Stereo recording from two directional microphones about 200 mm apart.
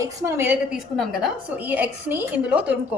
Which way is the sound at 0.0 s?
15° right (ahead or behind).